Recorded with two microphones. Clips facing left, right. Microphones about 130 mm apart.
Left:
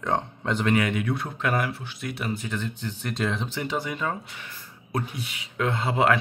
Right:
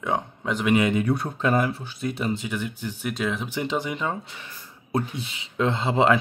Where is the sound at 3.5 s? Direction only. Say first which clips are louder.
Right 2 dB; 20° right (ahead or behind).